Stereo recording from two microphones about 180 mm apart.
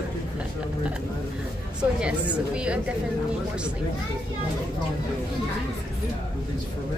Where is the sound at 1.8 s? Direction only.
5° right (ahead or behind).